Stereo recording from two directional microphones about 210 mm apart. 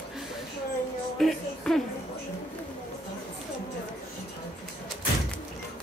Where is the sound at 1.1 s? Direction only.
Centre (ahead or behind).